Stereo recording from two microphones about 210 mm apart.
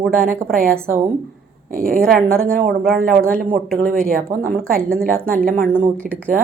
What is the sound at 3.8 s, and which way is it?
A woman's voice, 40° right (ahead or behind).